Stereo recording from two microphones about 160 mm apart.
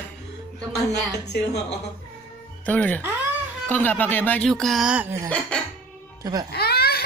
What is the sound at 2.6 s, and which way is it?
A woman's voice, 10° left (ahead or behind).